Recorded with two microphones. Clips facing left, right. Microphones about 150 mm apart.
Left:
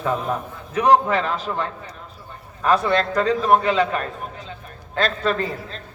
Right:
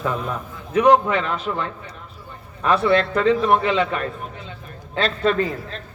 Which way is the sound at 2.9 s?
35° left (ahead or behind).